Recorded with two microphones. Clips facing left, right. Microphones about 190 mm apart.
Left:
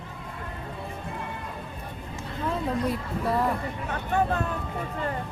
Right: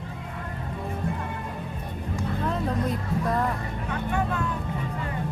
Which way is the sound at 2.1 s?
5° left (ahead or behind).